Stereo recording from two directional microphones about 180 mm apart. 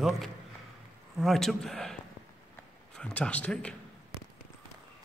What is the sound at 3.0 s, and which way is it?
Speech, 5° left (ahead or behind).